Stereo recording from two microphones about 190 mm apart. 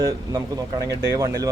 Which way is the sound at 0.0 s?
20° right (ahead or behind).